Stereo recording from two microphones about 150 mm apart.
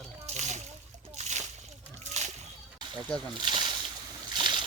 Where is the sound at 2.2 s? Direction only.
50° right (ahead or behind).